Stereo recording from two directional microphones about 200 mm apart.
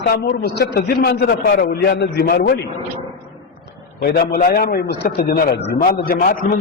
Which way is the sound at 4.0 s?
50° left (ahead or behind).